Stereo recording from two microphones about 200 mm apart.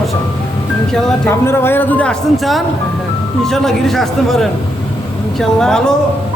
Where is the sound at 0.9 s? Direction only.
10° left (ahead or behind).